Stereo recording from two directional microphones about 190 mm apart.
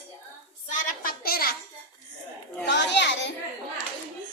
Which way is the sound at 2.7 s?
65° left (ahead or behind).